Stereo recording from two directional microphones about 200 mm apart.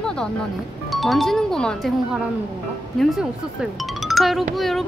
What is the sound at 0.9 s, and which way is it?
Speech, centre (ahead or behind).